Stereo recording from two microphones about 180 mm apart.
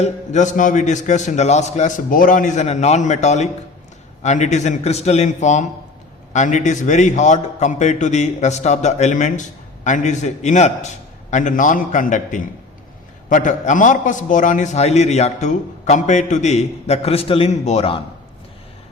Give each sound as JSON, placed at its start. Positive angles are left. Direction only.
{"t": 0.0, "sound": "a man's voice", "side_deg": 40}